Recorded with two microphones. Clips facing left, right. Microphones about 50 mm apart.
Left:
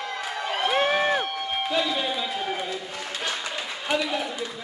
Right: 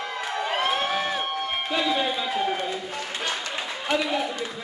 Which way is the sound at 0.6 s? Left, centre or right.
Left.